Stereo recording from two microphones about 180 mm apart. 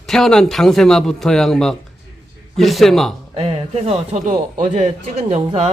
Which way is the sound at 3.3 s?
35° right (ahead or behind).